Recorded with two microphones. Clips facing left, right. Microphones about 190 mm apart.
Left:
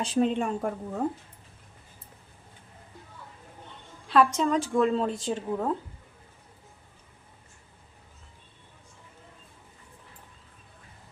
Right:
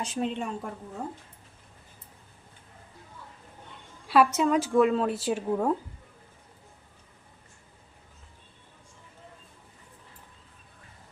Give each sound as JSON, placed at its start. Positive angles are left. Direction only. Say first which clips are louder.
{"t": 0.0, "sound": "speech", "louder": "left 6 dB", "side_deg": 35}
{"t": 0.3, "sound": "a woman's voice", "louder": "left 5 dB", "side_deg": 55}
{"t": 4.1, "sound": "a woman's voice", "louder": "right 1 dB", "side_deg": -5}